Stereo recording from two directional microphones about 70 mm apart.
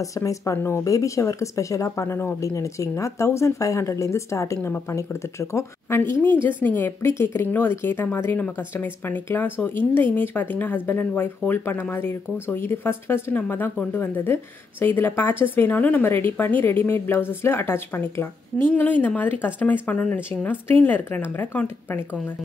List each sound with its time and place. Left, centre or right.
0.0 s speech: left
7.0 s speech: left
18.8 s speech: left